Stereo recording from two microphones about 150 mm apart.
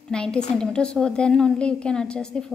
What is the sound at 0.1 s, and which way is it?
A woman's voice, 5° left (ahead or behind).